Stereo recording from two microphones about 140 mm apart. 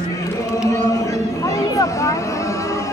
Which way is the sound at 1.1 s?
25° left (ahead or behind).